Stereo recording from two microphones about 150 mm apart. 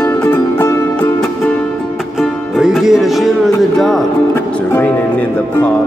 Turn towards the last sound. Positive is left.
turn(degrees=0)  # may be behind; listen again after turning